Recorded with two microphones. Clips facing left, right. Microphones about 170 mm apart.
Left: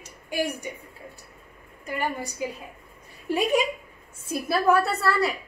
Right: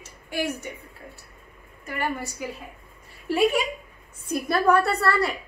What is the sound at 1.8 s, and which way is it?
Speech, 15° left (ahead or behind).